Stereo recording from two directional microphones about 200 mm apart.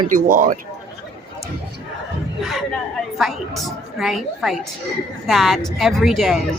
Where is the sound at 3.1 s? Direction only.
Centre (ahead or behind).